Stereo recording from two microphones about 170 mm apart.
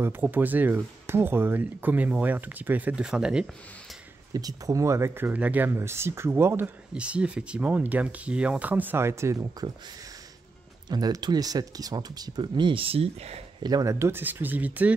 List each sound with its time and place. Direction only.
0.0 s speech: 10° right (ahead or behind)
4.3 s speech: 20° right (ahead or behind)
10.9 s speech: 25° right (ahead or behind)
13.6 s speech: 25° right (ahead or behind)